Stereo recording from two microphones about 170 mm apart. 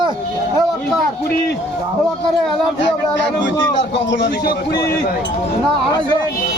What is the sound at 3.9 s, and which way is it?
Speech, 90° left.